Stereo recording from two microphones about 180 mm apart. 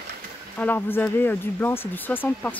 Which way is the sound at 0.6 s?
10° left (ahead or behind).